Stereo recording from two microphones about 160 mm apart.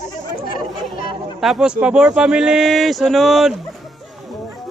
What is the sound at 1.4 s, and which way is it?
Speech, 5° right (ahead or behind).